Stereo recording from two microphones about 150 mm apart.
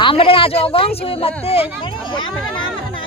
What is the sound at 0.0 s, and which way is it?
Speech, 35° left (ahead or behind).